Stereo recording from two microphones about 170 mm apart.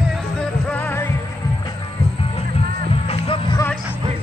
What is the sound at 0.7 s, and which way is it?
Music, 10° left (ahead or behind).